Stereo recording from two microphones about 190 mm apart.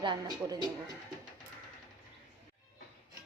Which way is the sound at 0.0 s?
20° right (ahead or behind).